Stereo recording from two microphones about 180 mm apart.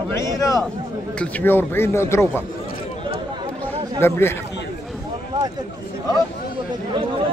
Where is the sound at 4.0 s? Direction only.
15° left (ahead or behind).